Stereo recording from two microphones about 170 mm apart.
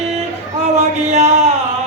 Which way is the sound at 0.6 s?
40° right (ahead or behind).